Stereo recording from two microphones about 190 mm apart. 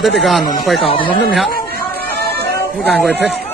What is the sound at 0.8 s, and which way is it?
Speech, 25° left (ahead or behind).